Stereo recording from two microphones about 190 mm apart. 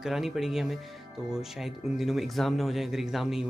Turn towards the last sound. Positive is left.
turn(degrees=0)  # may be behind; listen again after turning